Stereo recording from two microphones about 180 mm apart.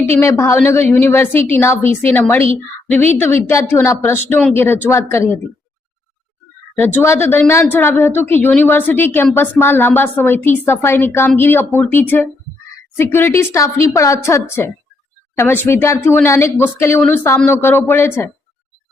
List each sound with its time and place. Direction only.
0.2 s a woman's voice: 15° left (ahead or behind)
6.7 s a woman's voice: 10° left (ahead or behind)